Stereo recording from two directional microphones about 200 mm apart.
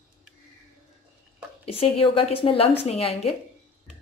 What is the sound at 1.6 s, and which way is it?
A woman's voice, 30° left (ahead or behind).